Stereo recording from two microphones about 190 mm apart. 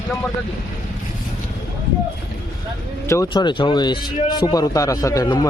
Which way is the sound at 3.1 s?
20° left (ahead or behind).